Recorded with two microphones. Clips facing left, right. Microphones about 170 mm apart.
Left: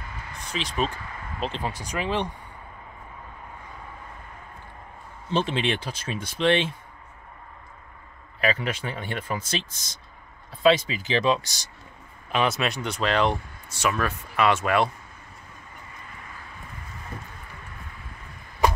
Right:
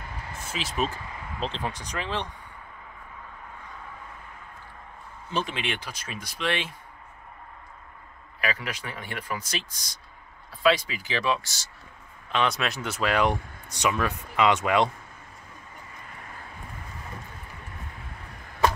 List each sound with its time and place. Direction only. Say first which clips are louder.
0.3 s speech: left 2 dB; 5° right (ahead or behind)
1.4 s speech: left 2 dB; 10° left (ahead or behind)
5.3 s speech: left 5 dB; 30° left (ahead or behind)
8.4 s speech: left 5 dB; 25° left (ahead or behind)
12.3 s speech: left 2 dB; 5° left (ahead or behind); by 14.9 s 15° right (ahead or behind)